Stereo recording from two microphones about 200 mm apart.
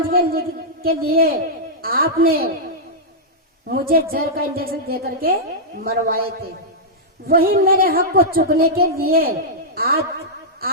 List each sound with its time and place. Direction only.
0.1 s a woman's voice: 50° right (ahead or behind)
3.7 s a woman's voice: 50° right (ahead or behind)
7.3 s a woman's voice: 45° right (ahead or behind)